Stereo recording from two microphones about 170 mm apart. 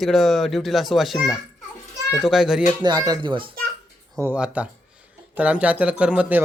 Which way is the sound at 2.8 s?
25° right (ahead or behind).